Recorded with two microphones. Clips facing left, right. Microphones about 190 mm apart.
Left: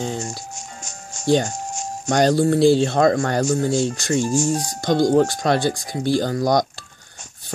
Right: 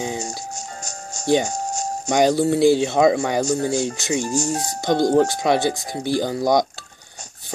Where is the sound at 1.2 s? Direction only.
15° right (ahead or behind).